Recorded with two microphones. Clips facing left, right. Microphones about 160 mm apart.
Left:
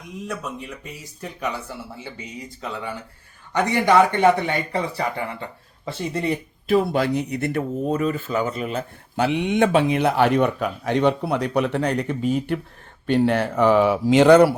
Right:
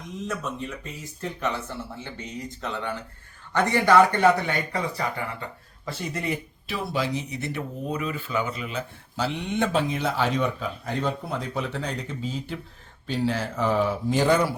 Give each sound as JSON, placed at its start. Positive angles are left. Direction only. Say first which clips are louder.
{"t": 0.3, "sound": "speech", "louder": "even", "side_deg": 10}
{"t": 6.7, "sound": "speech", "louder": "left 9 dB", "side_deg": 55}